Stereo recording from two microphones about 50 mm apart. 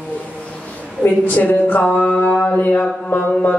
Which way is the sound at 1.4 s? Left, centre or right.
Left.